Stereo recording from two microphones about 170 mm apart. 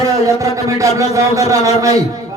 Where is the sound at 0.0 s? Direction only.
20° right (ahead or behind).